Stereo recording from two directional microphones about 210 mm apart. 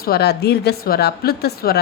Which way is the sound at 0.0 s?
50° left (ahead or behind).